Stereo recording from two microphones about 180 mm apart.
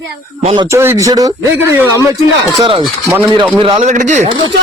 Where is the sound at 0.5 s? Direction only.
15° right (ahead or behind).